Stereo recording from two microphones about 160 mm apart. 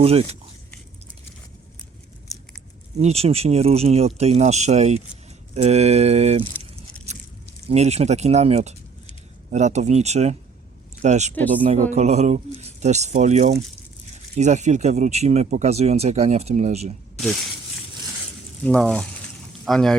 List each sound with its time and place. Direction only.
0.0 s speech: 40° right (ahead or behind)
3.0 s speech: 40° right (ahead or behind)
7.1 s biting: 45° right (ahead or behind)
7.7 s speech: 40° right (ahead or behind)
18.6 s speech: 5° left (ahead or behind)